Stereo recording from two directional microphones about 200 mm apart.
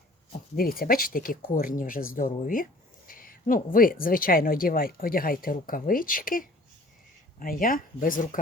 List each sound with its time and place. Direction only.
0.5 s speech: 45° left (ahead or behind)